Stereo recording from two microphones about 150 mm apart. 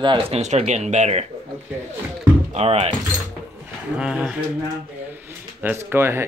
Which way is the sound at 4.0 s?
5° right (ahead or behind).